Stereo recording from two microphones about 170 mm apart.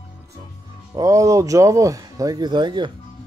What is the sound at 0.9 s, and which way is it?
Speech, 20° right (ahead or behind).